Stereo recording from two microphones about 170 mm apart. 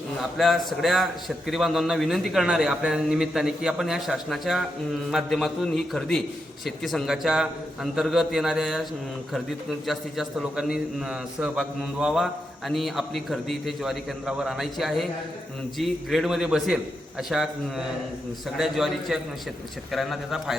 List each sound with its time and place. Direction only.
0.2 s a man's voice: centre (ahead or behind)